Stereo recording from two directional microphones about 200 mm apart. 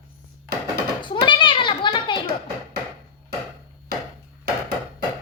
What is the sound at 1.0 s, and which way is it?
Children playing, 25° left (ahead or behind).